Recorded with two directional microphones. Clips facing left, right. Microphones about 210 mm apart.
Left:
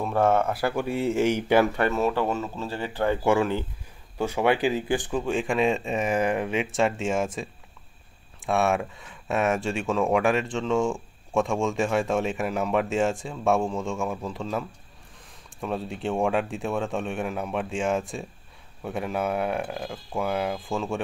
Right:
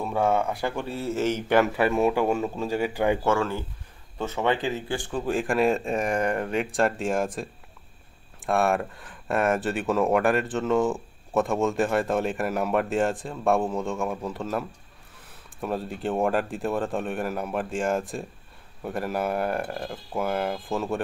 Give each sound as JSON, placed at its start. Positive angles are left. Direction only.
{"t": 0.0, "sound": "speech", "side_deg": 0}
{"t": 1.7, "sound": "speech", "side_deg": -10}
{"t": 3.3, "sound": "speech", "side_deg": 15}
{"t": 5.1, "sound": "speech", "side_deg": 0}
{"t": 8.5, "sound": "speech", "side_deg": 0}